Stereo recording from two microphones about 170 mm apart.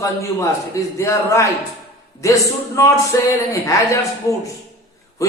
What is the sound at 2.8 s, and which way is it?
Speech, 20° left (ahead or behind).